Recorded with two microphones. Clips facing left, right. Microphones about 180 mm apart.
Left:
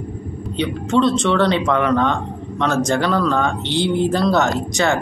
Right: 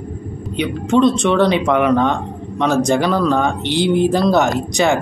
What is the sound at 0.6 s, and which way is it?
Speech, 15° right (ahead or behind).